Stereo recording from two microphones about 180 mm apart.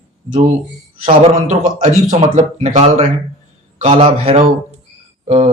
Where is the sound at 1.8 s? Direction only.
40° right (ahead or behind).